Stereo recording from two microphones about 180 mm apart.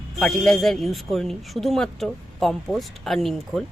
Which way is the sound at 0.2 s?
5° left (ahead or behind).